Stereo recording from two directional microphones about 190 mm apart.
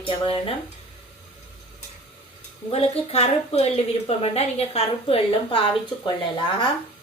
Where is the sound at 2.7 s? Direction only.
30° left (ahead or behind).